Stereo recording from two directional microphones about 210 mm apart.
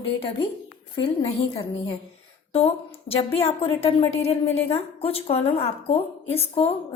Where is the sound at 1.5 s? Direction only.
25° left (ahead or behind).